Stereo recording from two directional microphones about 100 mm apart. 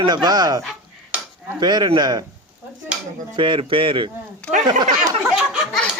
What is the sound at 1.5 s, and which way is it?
Speech, 45° right (ahead or behind).